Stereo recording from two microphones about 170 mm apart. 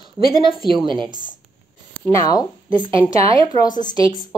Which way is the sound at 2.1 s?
20° left (ahead or behind).